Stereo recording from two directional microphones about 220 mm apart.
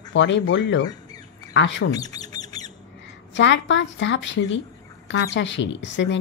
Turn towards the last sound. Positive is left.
turn(degrees=55)  # may be behind; listen again after turning